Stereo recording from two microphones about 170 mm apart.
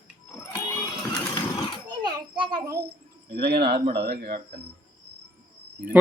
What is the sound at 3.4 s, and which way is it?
Speech, 75° right (ahead or behind).